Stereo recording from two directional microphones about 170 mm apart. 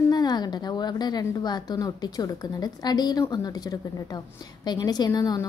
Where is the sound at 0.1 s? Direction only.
25° left (ahead or behind).